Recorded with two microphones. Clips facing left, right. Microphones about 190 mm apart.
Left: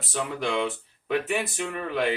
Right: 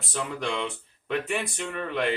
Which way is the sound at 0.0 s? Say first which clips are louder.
Left 2 dB; centre (ahead or behind).